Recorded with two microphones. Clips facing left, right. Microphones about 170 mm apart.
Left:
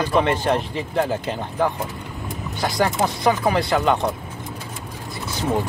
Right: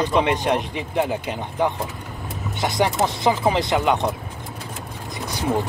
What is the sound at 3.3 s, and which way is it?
Speech, 20° right (ahead or behind).